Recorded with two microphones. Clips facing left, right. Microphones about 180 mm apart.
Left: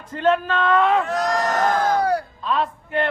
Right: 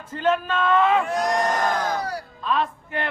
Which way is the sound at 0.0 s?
5° right (ahead or behind).